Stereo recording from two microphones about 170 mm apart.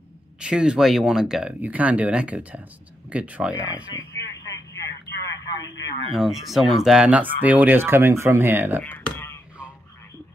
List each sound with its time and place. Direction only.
0.4 s speech: 5° right (ahead or behind)
3.9 s vehicle: 15° left (ahead or behind)
5.1 s telephone: 15° left (ahead or behind)
6.1 s speech: centre (ahead or behind)
8.9 s a sound: 15° left (ahead or behind)